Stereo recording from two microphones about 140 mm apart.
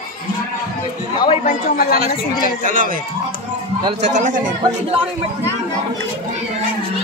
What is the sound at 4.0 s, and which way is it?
Speech, 65° right (ahead or behind).